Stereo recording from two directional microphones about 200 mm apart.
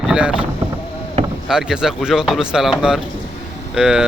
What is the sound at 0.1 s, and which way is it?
Speech, 5° right (ahead or behind).